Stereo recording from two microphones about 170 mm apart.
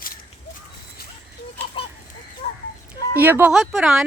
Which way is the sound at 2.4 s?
45° left (ahead or behind).